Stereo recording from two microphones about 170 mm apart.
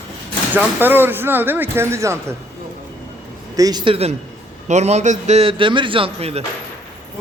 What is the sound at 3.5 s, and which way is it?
A man's voice, 25° right (ahead or behind).